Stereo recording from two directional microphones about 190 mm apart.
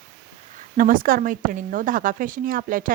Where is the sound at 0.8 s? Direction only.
45° right (ahead or behind).